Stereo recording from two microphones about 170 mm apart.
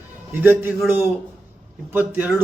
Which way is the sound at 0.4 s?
10° right (ahead or behind).